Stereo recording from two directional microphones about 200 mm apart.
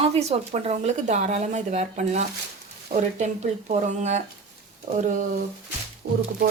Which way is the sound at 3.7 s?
35° right (ahead or behind).